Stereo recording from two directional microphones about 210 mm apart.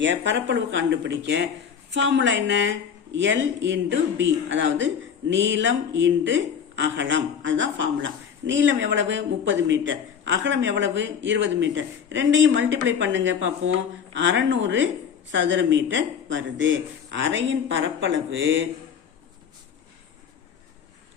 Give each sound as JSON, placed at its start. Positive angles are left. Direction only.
{"t": 0.0, "sound": "speech", "side_deg": -60}